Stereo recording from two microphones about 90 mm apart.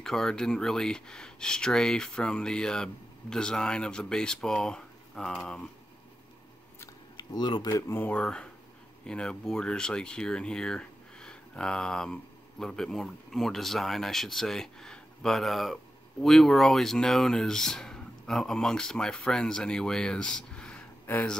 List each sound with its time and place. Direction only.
0.0 s speech: 5° left (ahead or behind)
7.2 s speech: 55° left (ahead or behind)
7.7 s speech: 25° left (ahead or behind)